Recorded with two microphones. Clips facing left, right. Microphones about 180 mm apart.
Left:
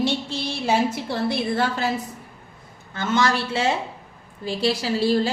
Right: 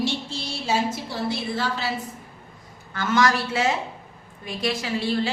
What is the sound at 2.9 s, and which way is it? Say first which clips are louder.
A woman's voice: even; 25° left (ahead or behind).